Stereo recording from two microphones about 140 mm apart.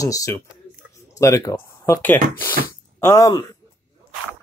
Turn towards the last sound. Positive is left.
turn(degrees=25)  # may be behind; listen again after turning